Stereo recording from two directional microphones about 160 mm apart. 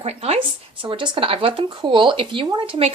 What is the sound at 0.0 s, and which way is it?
Speech, 40° right (ahead or behind).